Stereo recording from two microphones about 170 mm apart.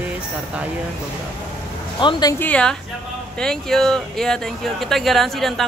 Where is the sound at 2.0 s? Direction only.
30° left (ahead or behind).